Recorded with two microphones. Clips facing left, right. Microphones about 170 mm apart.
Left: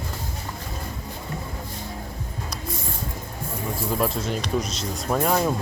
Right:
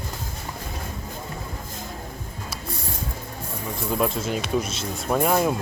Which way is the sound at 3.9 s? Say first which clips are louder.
Right 2 dB; centre (ahead or behind).